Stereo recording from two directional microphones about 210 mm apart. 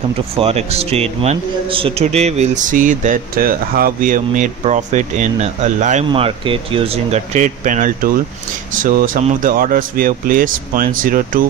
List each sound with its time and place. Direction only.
0.4 s a man's voice: 30° right (ahead or behind)